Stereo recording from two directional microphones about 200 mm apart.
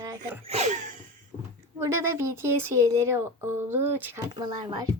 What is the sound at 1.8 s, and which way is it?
Speech, 15° right (ahead or behind).